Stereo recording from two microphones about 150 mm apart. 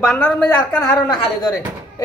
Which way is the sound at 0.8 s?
25° left (ahead or behind).